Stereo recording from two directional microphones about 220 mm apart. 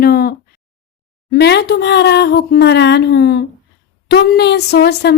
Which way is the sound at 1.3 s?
50° left (ahead or behind).